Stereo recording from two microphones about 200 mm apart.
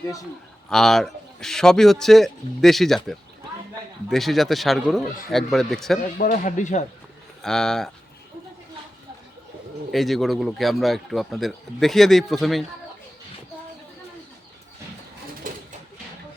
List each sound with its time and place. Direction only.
0.7 s speech: centre (ahead or behind)
6.1 s speech: 45° left (ahead or behind)
7.4 s speech: centre (ahead or behind)
9.9 s speech: centre (ahead or behind)